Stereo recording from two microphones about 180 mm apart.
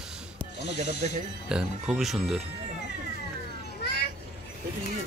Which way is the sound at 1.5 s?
5° right (ahead or behind).